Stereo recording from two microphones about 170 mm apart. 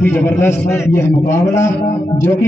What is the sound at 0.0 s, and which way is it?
A man's voice, 15° left (ahead or behind).